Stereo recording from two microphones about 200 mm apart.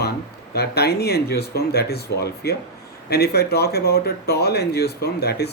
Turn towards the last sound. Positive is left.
turn(degrees=55)  # may be behind; listen again after turning